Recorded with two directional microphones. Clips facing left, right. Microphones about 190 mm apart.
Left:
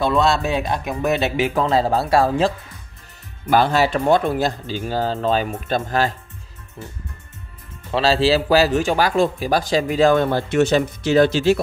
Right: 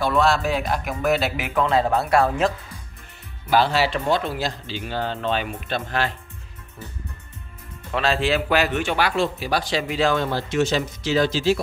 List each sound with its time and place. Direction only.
0.0 s speech: 25° left (ahead or behind)
3.4 s speech: 50° left (ahead or behind)
7.9 s speech: 30° left (ahead or behind); by 11.6 s 60° left (ahead or behind)